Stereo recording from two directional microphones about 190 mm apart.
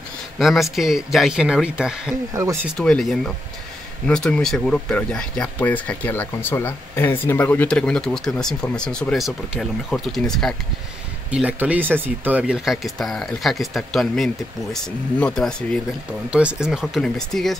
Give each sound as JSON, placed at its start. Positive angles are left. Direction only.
{"t": 0.4, "sound": "speech", "side_deg": 0}